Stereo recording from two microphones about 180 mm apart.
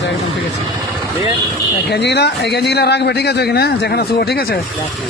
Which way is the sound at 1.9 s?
70° left (ahead or behind).